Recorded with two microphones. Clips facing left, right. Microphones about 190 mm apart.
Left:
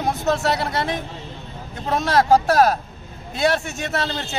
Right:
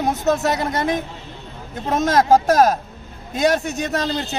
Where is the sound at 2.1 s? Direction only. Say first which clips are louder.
Right 1 dB; 45° right (ahead or behind).